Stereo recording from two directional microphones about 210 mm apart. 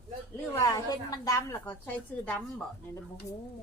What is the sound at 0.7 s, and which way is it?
A woman's voice, 15° left (ahead or behind).